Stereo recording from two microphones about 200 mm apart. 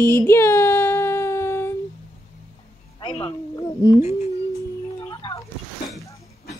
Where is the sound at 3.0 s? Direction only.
25° left (ahead or behind).